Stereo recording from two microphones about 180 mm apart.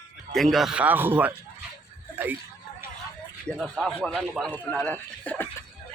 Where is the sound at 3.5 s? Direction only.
Centre (ahead or behind).